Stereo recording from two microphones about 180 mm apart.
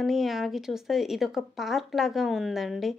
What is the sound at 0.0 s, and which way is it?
Speech, centre (ahead or behind).